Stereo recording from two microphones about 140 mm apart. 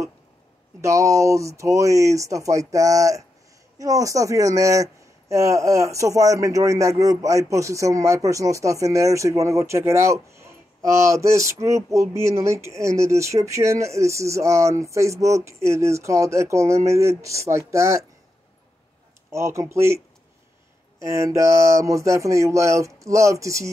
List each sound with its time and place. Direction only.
0.7 s speech: 20° right (ahead or behind)
19.3 s speech: 20° right (ahead or behind)
21.0 s speech: 20° right (ahead or behind)